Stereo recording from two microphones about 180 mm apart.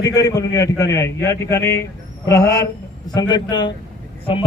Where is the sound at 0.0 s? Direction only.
20° left (ahead or behind).